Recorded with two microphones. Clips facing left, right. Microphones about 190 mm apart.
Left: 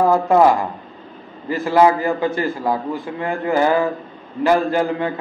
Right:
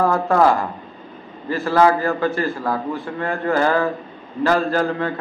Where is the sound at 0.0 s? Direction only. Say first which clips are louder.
Left 3 dB; 20° left (ahead or behind).